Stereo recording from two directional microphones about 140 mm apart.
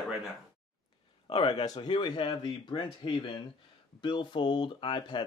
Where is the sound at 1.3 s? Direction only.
40° left (ahead or behind).